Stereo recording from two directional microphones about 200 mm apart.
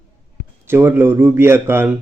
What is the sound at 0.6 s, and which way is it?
A man's voice, 10° right (ahead or behind).